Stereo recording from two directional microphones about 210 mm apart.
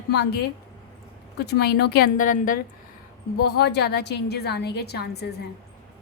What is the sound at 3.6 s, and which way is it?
A woman's voice, 50° left (ahead or behind).